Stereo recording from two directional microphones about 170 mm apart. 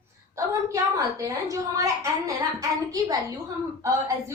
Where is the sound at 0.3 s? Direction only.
20° right (ahead or behind).